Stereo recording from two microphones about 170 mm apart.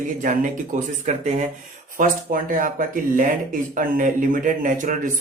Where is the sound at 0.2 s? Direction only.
50° right (ahead or behind).